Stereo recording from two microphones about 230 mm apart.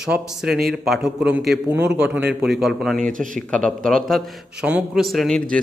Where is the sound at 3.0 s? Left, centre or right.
Right.